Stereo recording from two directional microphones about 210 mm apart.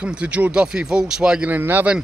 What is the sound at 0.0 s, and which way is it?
Speech, 5° right (ahead or behind).